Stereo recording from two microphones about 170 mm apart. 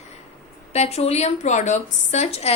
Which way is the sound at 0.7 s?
40° left (ahead or behind).